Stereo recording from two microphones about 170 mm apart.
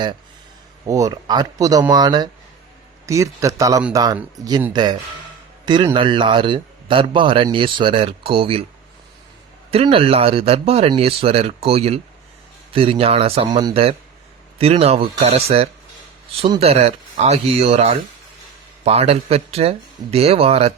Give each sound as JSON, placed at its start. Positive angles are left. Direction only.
{"t": 0.9, "sound": "a man's voice", "side_deg": -20}
{"t": 9.7, "sound": "speech", "side_deg": -35}